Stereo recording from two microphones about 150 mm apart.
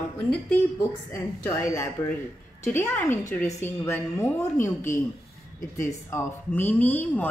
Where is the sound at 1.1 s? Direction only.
20° left (ahead or behind).